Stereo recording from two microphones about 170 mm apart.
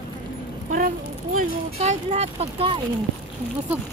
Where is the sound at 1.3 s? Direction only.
40° right (ahead or behind).